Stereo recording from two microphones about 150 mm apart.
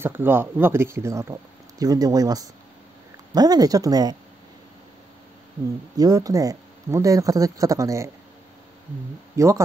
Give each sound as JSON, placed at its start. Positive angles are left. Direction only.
{"t": 0.0, "sound": "speech", "side_deg": -15}
{"t": 5.9, "sound": "speech", "side_deg": -25}
{"t": 9.4, "sound": "speech", "side_deg": -20}